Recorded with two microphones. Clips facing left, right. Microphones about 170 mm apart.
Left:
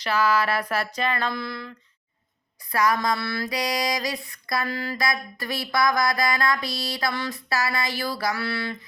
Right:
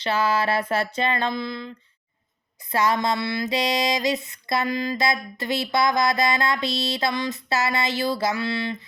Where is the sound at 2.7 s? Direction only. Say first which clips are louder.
Right 1 dB; 25° right (ahead or behind).